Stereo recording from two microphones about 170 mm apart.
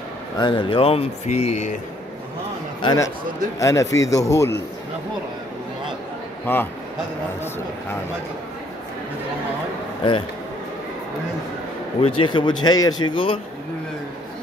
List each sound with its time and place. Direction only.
0.4 s speech: 30° left (ahead or behind)
2.8 s speech: 25° left (ahead or behind)
6.4 s speech: 10° left (ahead or behind)
12.0 s speech: 30° left (ahead or behind)